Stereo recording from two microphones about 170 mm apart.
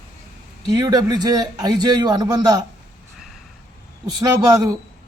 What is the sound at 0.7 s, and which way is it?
A man's voice, 25° right (ahead or behind).